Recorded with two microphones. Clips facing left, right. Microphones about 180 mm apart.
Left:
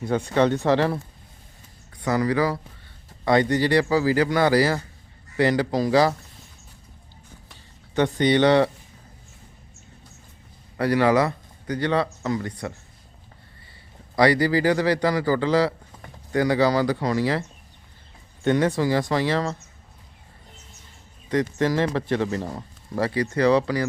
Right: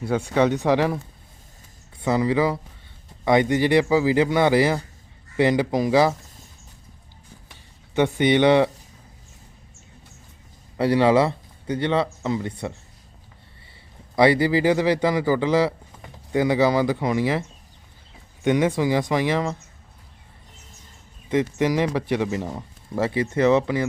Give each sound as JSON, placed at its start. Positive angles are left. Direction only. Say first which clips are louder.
{"t": 0.0, "sound": "speech", "louder": "even", "side_deg": -5}
{"t": 2.0, "sound": "speech", "louder": "right 1 dB", "side_deg": -25}
{"t": 7.9, "sound": "speech", "louder": "right 1 dB", "side_deg": -15}
{"t": 10.8, "sound": "speech", "louder": "right 2 dB", "side_deg": -25}
{"t": 14.2, "sound": "speech", "louder": "right 1 dB", "side_deg": -20}
{"t": 18.4, "sound": "speech", "louder": "right 1 dB", "side_deg": -15}
{"t": 21.2, "sound": "speech", "louder": "right 1 dB", "side_deg": -20}